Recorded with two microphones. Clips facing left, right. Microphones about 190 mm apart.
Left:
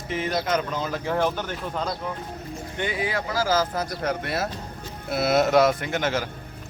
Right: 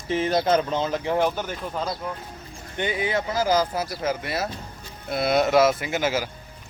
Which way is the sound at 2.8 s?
25° right (ahead or behind).